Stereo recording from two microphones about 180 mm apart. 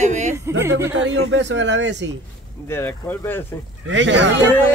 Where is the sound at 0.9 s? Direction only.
90° right.